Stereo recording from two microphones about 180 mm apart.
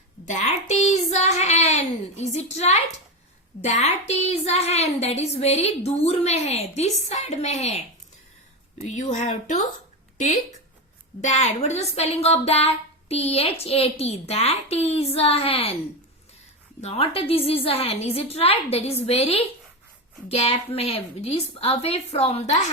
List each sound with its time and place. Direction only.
0.3 s speech: 40° left (ahead or behind)
8.9 s speech: 40° left (ahead or behind)
11.2 s speech: 40° left (ahead or behind)
16.8 s speech: 30° left (ahead or behind)